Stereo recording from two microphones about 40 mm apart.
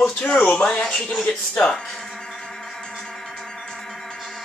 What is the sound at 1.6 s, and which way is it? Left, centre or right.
Speech, centre.